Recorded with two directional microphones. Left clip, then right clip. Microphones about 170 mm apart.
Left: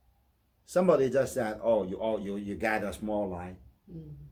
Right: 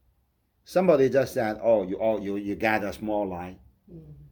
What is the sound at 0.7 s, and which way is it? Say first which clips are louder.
Speech: right 4 dB; 30° right (ahead or behind).